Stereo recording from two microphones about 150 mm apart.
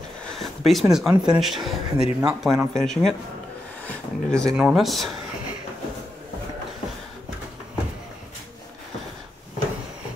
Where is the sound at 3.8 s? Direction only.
5° left (ahead or behind).